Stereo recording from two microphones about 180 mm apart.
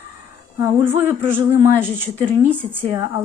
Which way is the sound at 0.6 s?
15° right (ahead or behind).